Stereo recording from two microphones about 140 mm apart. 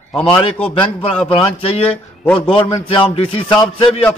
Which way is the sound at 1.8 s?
10° left (ahead or behind).